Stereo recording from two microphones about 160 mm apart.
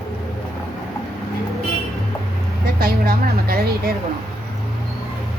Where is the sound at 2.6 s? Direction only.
70° right (ahead or behind).